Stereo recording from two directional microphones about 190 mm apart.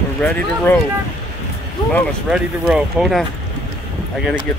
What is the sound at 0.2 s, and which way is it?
Speech, 10° left (ahead or behind).